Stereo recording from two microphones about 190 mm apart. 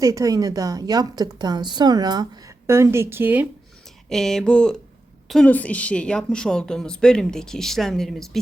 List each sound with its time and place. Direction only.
0.0 s a woman's voice: 15° right (ahead or behind)
4.1 s a woman's voice: centre (ahead or behind)